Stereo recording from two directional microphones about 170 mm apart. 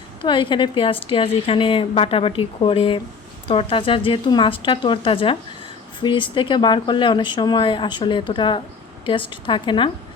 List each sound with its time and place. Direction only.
0.2 s a woman's voice: 30° left (ahead or behind)